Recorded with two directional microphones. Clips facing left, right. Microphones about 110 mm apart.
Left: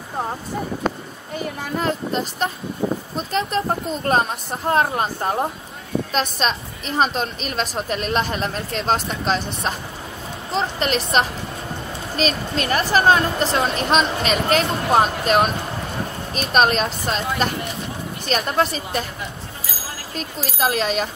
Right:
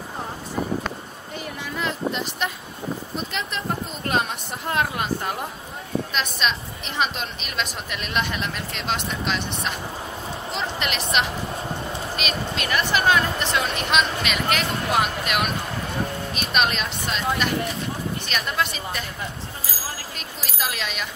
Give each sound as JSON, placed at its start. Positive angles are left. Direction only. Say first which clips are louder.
{"t": 1.4, "sound": "a woman's voice", "louder": "left 5 dB", "side_deg": 40}
{"t": 12.2, "sound": "a woman's voice", "louder": "left 9 dB", "side_deg": 35}
{"t": 20.2, "sound": "a woman's voice", "louder": "left 11 dB", "side_deg": 40}